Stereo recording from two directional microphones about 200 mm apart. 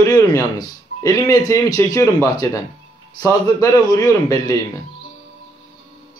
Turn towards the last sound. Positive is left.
turn(degrees=15)  # may be behind; listen again after turning